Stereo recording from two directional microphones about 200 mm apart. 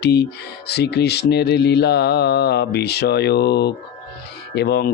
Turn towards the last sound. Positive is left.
turn(degrees=55)  # may be behind; listen again after turning